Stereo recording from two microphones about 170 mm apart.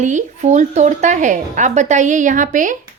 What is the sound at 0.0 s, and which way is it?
A woman's voice, 45° right (ahead or behind).